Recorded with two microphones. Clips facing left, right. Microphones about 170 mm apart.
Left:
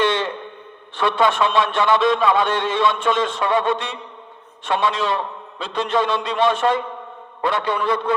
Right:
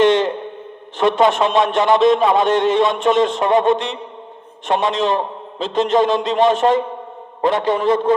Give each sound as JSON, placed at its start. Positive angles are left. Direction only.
{"t": 0.9, "sound": "a man's voice", "side_deg": -45}
{"t": 4.8, "sound": "a man's voice", "side_deg": -45}